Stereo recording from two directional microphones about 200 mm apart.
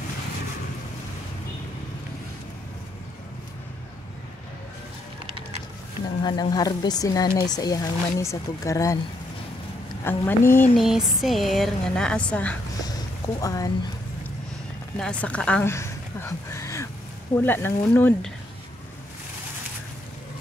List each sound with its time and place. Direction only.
6.2 s speech: 20° left (ahead or behind)
10.0 s speech: 10° left (ahead or behind)
10.8 s a woman's voice: centre (ahead or behind)
13.4 s speech: 15° left (ahead or behind)
15.0 s a woman's voice: 5° left (ahead or behind)